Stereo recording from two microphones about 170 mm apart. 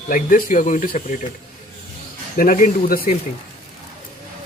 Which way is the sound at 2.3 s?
55° left (ahead or behind).